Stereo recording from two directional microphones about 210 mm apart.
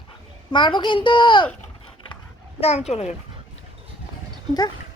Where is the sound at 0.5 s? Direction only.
20° left (ahead or behind).